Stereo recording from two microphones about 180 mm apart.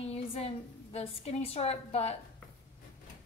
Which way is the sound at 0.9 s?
35° left (ahead or behind).